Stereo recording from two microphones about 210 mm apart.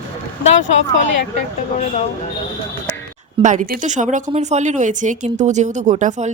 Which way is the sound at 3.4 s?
35° right (ahead or behind).